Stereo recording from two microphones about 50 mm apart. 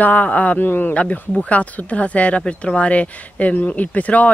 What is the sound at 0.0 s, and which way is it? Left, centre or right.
Speech, left.